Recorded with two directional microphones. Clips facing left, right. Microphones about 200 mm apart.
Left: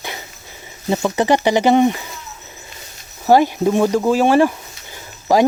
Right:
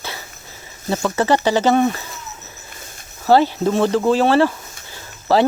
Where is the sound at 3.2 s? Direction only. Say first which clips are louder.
Left 1 dB; 15° left (ahead or behind).